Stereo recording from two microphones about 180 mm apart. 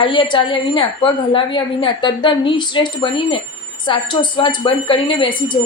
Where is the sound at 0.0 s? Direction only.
25° left (ahead or behind).